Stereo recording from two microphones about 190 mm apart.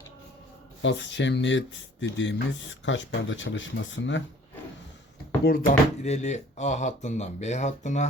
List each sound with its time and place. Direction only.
0.8 s speech: 70° left (ahead or behind)
5.5 s speech: 50° left (ahead or behind)
6.0 s speech: 35° left (ahead or behind)